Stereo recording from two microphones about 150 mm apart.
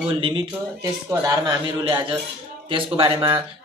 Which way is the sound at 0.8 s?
20° right (ahead or behind).